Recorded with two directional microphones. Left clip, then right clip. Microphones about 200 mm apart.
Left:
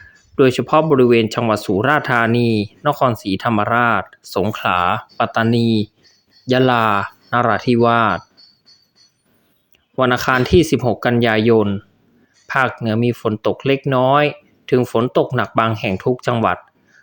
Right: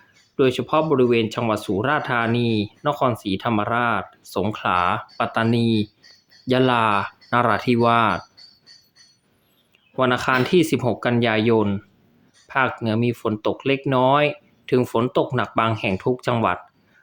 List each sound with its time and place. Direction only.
0.3 s speech: 30° left (ahead or behind)
9.9 s speech: 20° left (ahead or behind)